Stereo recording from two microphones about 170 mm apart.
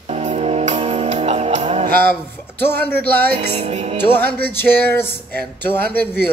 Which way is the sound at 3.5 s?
40° right (ahead or behind).